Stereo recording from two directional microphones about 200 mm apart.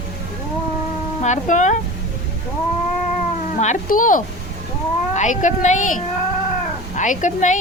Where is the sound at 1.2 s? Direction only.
35° left (ahead or behind).